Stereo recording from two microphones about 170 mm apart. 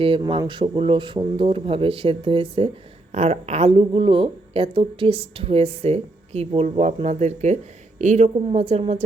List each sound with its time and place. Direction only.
0.0 s speech: 30° right (ahead or behind)